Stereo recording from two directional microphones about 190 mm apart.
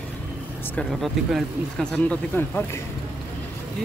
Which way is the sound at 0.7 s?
Centre (ahead or behind).